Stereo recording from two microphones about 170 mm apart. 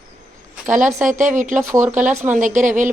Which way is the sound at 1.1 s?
45° right (ahead or behind).